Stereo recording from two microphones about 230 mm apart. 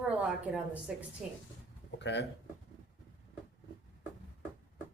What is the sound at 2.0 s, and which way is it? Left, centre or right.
Speech, left.